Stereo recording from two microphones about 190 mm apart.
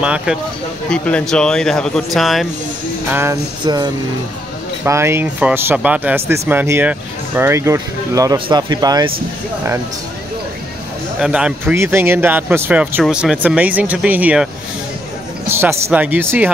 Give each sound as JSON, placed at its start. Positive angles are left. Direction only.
{"t": 0.0, "sound": "speech", "side_deg": -5}
{"t": 0.8, "sound": "speech", "side_deg": 5}
{"t": 3.1, "sound": "speech", "side_deg": -15}
{"t": 11.1, "sound": "speech", "side_deg": -5}
{"t": 15.5, "sound": "speech", "side_deg": -10}